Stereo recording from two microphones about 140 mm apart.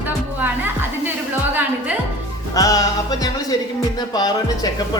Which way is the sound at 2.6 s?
25° left (ahead or behind).